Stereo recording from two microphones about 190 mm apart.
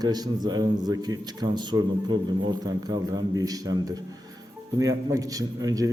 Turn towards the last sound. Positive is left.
turn(degrees=-20)  # may be behind; listen again after turning